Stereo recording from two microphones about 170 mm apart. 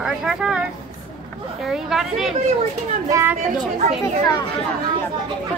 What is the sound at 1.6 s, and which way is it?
Speech, 5° right (ahead or behind).